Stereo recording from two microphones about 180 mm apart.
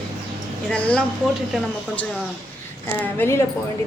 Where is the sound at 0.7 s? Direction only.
5° left (ahead or behind).